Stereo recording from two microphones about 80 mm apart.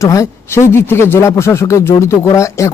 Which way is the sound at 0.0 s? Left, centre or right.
Left.